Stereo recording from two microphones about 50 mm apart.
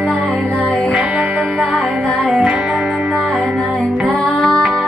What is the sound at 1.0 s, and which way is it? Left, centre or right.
Music, right.